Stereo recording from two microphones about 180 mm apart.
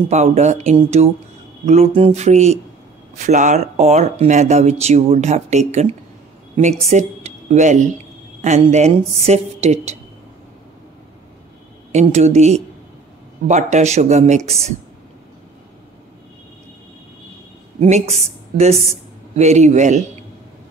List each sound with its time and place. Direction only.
0.1 s a woman's voice: 40° right (ahead or behind)
11.9 s speech: 40° right (ahead or behind)
17.7 s speech: 40° right (ahead or behind)